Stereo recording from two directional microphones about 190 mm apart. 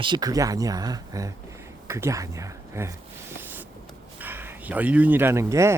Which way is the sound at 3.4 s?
10° right (ahead or behind).